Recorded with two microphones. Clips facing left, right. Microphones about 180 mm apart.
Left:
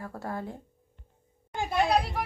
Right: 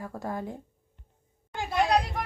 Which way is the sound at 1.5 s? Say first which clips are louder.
Even; 5° left (ahead or behind).